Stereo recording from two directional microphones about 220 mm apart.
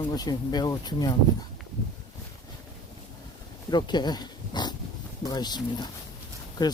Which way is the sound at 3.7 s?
20° left (ahead or behind).